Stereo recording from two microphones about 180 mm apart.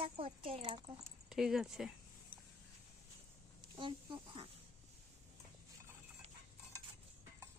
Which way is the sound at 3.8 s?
25° right (ahead or behind).